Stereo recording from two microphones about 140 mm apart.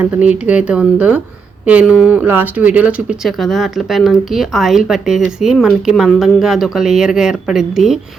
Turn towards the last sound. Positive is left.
turn(degrees=-5)  # may be behind; listen again after turning